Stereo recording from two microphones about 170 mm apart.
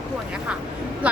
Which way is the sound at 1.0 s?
10° right (ahead or behind).